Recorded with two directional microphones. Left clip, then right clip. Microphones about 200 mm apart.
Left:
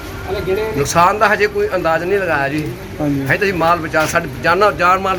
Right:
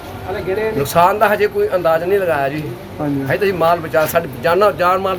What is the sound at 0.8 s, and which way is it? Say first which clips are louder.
A man's voice: even; 15° right (ahead or behind).